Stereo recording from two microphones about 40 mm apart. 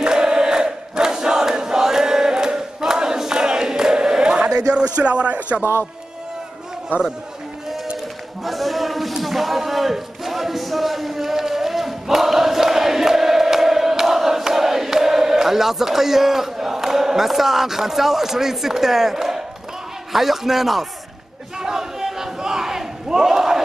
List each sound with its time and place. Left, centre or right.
0.0 s crowd: centre
8.5 s a sound: centre
20.1 s a man's voice: centre
21.5 s battle cry: centre